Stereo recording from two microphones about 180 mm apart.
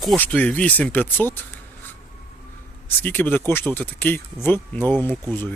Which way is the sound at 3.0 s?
10° left (ahead or behind).